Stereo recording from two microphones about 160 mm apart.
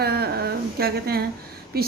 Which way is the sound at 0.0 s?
80° right.